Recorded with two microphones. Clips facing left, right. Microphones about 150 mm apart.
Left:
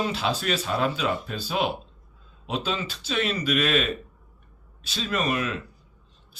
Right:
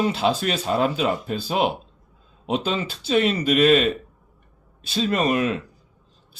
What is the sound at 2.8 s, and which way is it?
Speech, 35° right (ahead or behind).